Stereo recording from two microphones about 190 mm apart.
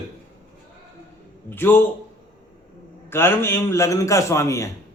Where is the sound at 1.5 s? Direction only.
10° left (ahead or behind).